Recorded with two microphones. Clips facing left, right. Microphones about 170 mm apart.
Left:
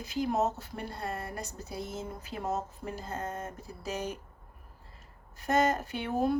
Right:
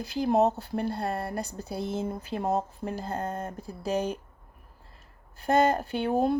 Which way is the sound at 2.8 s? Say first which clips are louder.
Right 5 dB; 60° right (ahead or behind).